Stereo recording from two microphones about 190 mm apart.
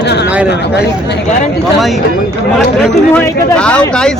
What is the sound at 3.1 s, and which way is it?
Speech, 5° left (ahead or behind).